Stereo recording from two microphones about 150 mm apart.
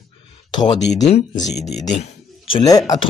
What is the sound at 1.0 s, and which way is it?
Speech, 45° left (ahead or behind).